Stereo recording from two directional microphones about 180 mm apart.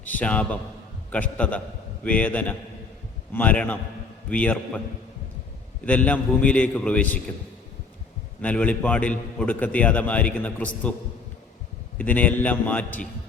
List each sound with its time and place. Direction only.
0.0 s a man's voice: 10° left (ahead or behind)
5.8 s a man's voice: 10° left (ahead or behind)
8.4 s a man's voice: 5° left (ahead or behind)
11.9 s a man's voice: 10° left (ahead or behind)